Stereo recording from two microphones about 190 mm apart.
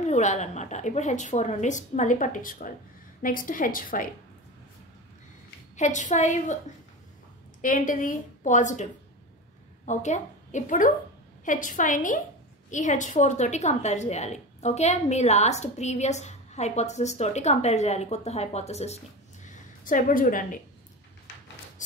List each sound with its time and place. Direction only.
0.0 s a woman's voice: 40° left (ahead or behind)
5.8 s a woman's voice: 40° left (ahead or behind)
7.6 s a woman's voice: 45° left (ahead or behind)
9.8 s a woman's voice: 40° left (ahead or behind)